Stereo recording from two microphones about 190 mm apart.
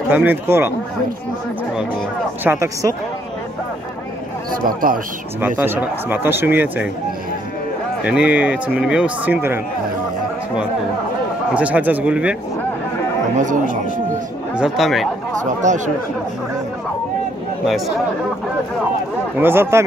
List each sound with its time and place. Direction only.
0.1 s speech: 10° right (ahead or behind)
2.4 s speech: 15° right (ahead or behind)
4.6 s speech: 50° right (ahead or behind)
5.6 s speech: 10° right (ahead or behind)
8.0 s speech: 5° right (ahead or behind)
11.5 s speech: 5° right (ahead or behind)
13.4 s speech: 40° right (ahead or behind)
14.5 s speech: 5° right (ahead or behind)
15.6 s speech: 40° right (ahead or behind)
17.6 s speech: centre (ahead or behind)
19.3 s speech: 10° right (ahead or behind)